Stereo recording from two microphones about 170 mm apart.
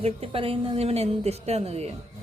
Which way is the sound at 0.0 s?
35° right (ahead or behind).